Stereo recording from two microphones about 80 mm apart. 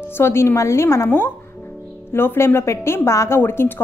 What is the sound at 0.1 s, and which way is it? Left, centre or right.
A woman's voice, left.